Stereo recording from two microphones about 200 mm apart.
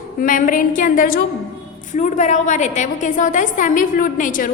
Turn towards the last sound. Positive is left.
turn(degrees=40)  # may be behind; listen again after turning